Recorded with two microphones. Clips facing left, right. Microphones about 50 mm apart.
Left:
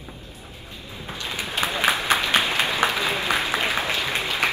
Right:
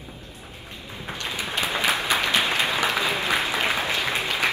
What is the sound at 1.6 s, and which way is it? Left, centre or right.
Applause, left.